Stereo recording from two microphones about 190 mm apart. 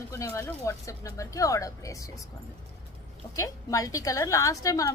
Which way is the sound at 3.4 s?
15° left (ahead or behind).